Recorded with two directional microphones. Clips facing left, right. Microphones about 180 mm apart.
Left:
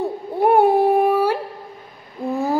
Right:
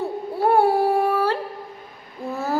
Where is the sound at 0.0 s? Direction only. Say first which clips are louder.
Left 3 dB; 20° left (ahead or behind).